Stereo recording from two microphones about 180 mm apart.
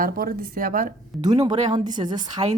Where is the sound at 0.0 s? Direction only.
50° right (ahead or behind).